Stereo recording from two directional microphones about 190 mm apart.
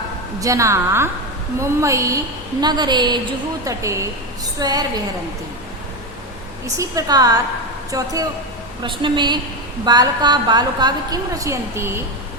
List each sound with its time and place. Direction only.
0.3 s a woman's voice: 15° right (ahead or behind)
6.7 s a woman's voice: 20° right (ahead or behind)